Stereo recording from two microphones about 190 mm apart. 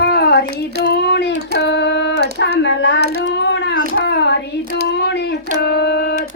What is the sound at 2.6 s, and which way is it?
Child singing, 70° left (ahead or behind).